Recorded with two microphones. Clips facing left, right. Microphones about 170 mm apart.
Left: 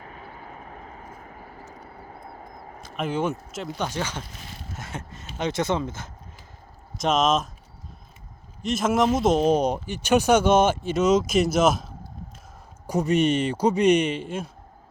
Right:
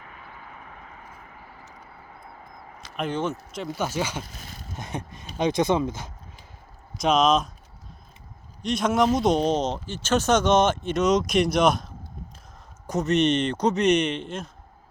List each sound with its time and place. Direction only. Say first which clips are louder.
0.0 s vehicle: left 3 dB; 35° left (ahead or behind)
2.9 s speech: left 1 dB; 5° left (ahead or behind)
3.6 s speech: right 2 dB; 5° right (ahead or behind)
7.0 s a man's voice: right 1 dB; centre (ahead or behind)
8.6 s a man's voice: even; 5° left (ahead or behind)